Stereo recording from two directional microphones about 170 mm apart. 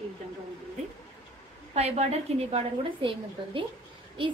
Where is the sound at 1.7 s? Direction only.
40° right (ahead or behind).